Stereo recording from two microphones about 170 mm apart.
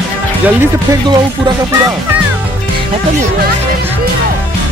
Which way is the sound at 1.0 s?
25° right (ahead or behind).